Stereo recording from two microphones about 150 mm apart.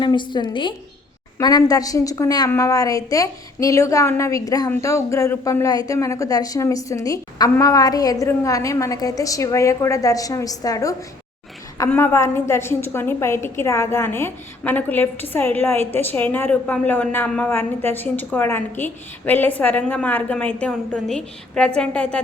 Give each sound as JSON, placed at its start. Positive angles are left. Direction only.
{"t": 0.0, "sound": "a woman's voice", "side_deg": 30}